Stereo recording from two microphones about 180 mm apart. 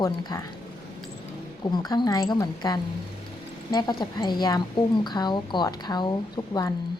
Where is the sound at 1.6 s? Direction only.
25° left (ahead or behind).